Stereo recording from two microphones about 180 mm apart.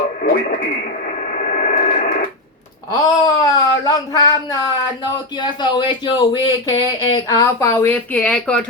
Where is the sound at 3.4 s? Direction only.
20° left (ahead or behind).